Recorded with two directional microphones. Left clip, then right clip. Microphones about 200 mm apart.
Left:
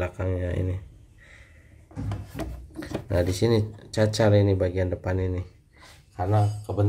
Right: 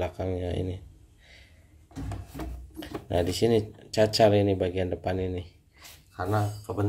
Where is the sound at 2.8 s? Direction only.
Centre (ahead or behind).